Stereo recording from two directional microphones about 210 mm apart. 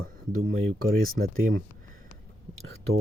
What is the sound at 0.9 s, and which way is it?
Speech, 45° right (ahead or behind).